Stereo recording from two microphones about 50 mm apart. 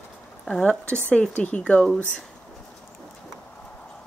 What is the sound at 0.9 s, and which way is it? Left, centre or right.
Speech, left.